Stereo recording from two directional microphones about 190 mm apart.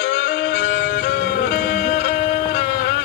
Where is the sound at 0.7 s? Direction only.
55° left (ahead or behind).